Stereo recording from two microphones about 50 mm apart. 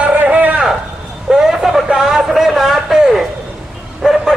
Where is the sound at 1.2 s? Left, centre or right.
Centre.